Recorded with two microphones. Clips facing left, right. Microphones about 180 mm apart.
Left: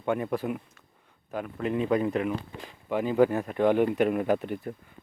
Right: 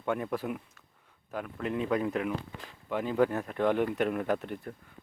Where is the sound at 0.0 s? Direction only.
5° left (ahead or behind).